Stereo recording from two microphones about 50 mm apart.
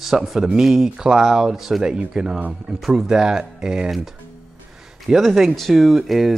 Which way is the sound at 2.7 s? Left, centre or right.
Centre.